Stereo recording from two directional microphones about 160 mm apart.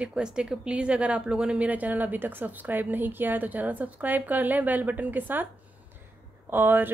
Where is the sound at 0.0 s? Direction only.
5° right (ahead or behind).